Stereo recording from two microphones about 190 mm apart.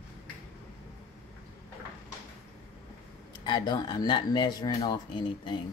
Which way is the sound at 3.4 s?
20° left (ahead or behind).